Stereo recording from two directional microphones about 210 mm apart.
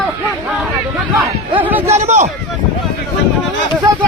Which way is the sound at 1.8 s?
30° right (ahead or behind).